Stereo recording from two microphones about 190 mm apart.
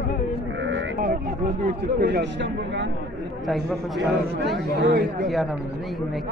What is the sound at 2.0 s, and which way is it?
Speech, 65° right (ahead or behind).